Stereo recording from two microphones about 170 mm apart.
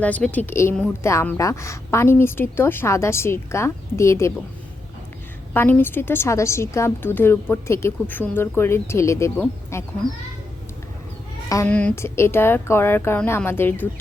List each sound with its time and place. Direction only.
0.0 s a woman's voice: 10° left (ahead or behind)
5.5 s a woman's voice: 10° left (ahead or behind)
11.4 s speech: 20° left (ahead or behind)
11.7 s a woman's voice: 5° left (ahead or behind)